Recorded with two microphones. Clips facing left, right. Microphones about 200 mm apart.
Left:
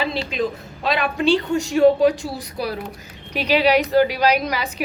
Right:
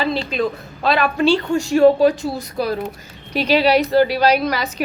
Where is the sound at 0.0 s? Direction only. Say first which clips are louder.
Right 3 dB; 10° left (ahead or behind).